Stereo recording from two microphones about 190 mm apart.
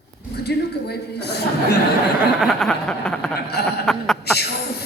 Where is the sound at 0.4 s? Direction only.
60° left (ahead or behind).